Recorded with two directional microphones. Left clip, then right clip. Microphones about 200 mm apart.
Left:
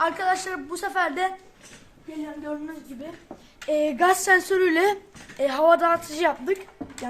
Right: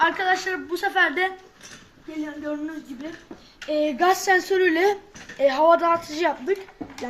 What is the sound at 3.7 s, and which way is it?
A woman's voice, 30° left (ahead or behind).